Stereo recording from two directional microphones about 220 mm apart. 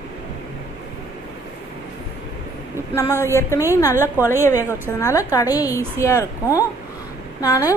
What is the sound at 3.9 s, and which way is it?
Speech, 10° right (ahead or behind).